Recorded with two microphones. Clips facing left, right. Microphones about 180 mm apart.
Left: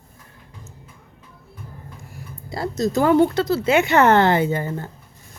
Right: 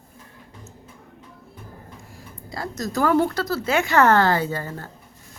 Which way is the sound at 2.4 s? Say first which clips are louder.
Left 5 dB; 25° left (ahead or behind).